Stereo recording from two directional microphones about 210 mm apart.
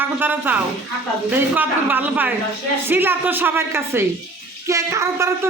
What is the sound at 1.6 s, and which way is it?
Speech, 10° right (ahead or behind).